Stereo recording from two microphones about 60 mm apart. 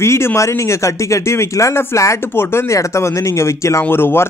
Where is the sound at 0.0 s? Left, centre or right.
Left.